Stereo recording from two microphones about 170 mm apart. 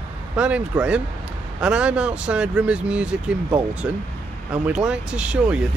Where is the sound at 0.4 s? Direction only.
5° right (ahead or behind).